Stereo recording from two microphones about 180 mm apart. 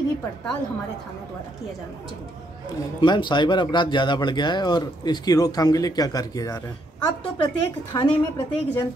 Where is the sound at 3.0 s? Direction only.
25° left (ahead or behind).